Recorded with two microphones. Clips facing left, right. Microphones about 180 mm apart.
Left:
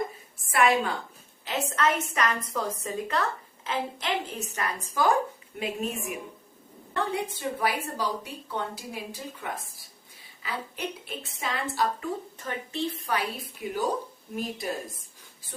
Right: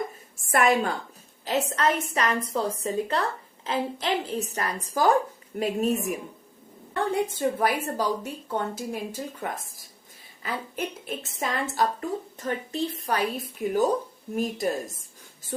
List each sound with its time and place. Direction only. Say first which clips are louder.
0.5 s a woman's voice: right 1 dB; 45° right (ahead or behind)